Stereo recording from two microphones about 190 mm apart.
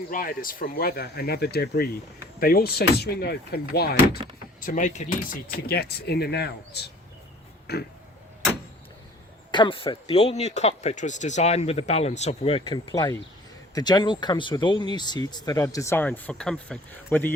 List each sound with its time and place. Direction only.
0.1 s speech: 50° left (ahead or behind)
4.6 s speech: 40° left (ahead or behind); by 7.8 s 55° left (ahead or behind)
9.5 s speech: 25° left (ahead or behind); by 17.3 s 10° left (ahead or behind)